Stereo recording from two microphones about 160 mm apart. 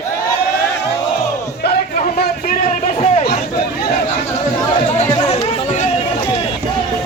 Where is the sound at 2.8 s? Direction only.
40° left (ahead or behind).